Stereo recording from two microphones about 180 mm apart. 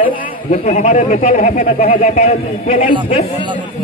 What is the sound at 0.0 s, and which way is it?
Speech, 30° left (ahead or behind).